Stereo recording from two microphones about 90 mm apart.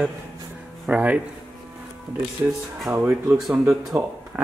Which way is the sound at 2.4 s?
25° right (ahead or behind).